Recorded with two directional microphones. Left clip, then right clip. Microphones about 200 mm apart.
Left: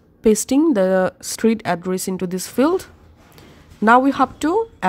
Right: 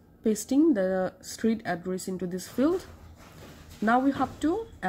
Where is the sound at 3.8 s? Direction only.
45° left (ahead or behind).